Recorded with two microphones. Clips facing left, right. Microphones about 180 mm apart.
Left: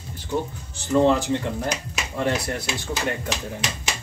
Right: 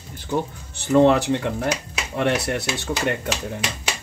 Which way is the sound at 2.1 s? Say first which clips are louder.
Right 3 dB; 70° right (ahead or behind).